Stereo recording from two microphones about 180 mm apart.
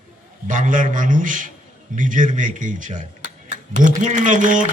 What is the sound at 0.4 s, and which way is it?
A man's voice, 45° right (ahead or behind).